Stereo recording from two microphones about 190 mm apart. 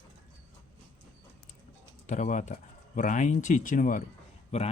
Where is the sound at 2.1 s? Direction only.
40° left (ahead or behind).